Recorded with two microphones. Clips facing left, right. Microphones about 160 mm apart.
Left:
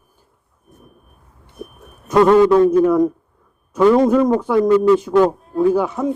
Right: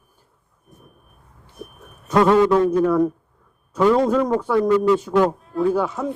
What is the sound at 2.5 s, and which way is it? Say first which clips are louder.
Speech: left 4 dB; 15° left (ahead or behind).